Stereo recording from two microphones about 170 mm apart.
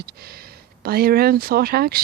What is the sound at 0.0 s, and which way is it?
Speech, 65° right (ahead or behind).